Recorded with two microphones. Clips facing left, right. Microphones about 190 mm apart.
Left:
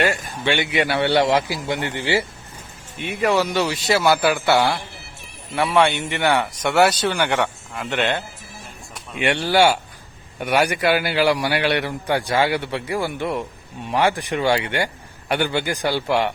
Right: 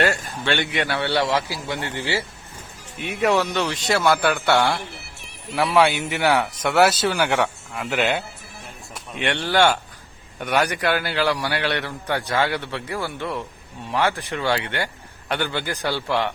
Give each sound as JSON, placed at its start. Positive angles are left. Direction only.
{"t": 0.0, "sound": "a man's voice", "side_deg": 15}
{"t": 0.9, "sound": "a man's voice", "side_deg": 20}
{"t": 3.0, "sound": "a man's voice", "side_deg": 0}
{"t": 9.1, "sound": "a man's voice", "side_deg": 10}